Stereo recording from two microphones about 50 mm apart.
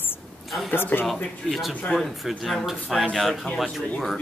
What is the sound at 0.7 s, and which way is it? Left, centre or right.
Speech, left.